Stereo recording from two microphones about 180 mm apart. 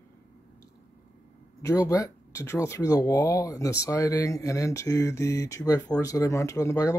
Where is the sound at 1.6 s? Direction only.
20° left (ahead or behind).